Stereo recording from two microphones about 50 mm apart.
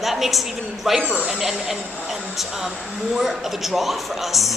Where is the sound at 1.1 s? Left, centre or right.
Centre.